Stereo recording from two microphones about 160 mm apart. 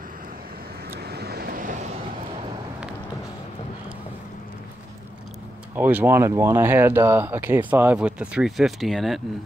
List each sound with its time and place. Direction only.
0.9 s vehicle: 90° right; by 1.9 s 55° right (ahead or behind)
5.8 s speech: 10° right (ahead or behind)